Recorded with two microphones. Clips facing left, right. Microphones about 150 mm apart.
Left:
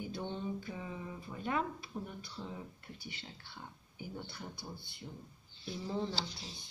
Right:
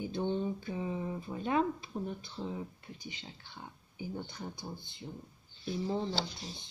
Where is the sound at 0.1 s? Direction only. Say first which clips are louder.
Right 8 dB; 25° right (ahead or behind).